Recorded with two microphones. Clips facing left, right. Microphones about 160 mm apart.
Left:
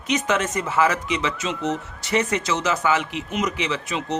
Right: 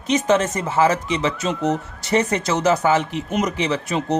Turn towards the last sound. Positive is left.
turn(degrees=-40)  # may be behind; listen again after turning